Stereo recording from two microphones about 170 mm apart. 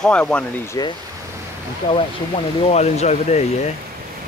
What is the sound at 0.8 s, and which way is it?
Speech, 20° left (ahead or behind).